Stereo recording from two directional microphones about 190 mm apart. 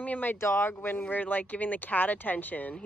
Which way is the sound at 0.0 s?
10° left (ahead or behind).